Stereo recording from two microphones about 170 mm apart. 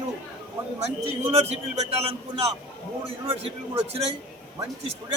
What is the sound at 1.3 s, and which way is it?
A man's voice, 40° right (ahead or behind).